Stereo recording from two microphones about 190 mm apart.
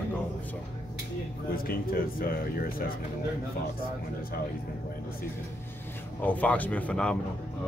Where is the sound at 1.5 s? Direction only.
50° left (ahead or behind).